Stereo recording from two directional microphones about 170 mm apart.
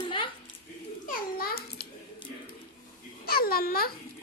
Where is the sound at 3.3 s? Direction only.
60° left (ahead or behind).